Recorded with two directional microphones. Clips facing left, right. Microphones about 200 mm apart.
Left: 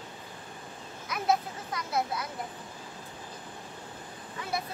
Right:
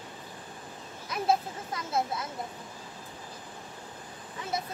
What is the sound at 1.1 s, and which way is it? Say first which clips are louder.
Speech: right 1 dB; 25° right (ahead or behind).